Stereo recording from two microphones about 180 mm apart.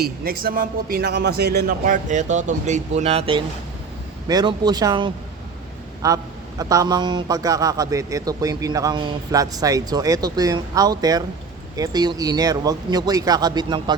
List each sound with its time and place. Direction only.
0.0 s a man's voice: 55° right (ahead or behind); by 13.9 s 25° right (ahead or behind)